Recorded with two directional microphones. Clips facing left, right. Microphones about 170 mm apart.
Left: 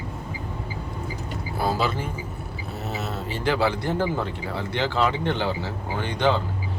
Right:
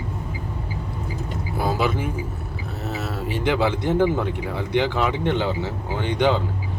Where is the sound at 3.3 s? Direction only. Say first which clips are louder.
Right 2 dB; 20° right (ahead or behind).